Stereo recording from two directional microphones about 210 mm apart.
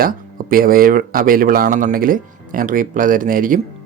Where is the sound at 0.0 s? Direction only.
40° right (ahead or behind).